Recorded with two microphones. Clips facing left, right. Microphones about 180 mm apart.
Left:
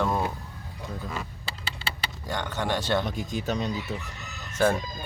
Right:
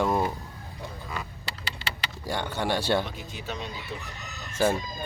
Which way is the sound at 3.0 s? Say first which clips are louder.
Left 7 dB; 40° left (ahead or behind).